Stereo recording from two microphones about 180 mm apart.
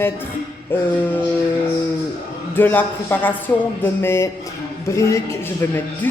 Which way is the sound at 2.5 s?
10° left (ahead or behind).